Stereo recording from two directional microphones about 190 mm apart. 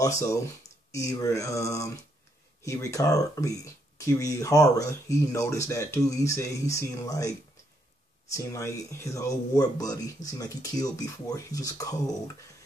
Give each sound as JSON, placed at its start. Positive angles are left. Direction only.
{"t": 0.0, "sound": "speech", "side_deg": 15}